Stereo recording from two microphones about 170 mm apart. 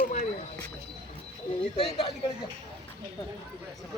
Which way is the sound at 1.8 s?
30° left (ahead or behind).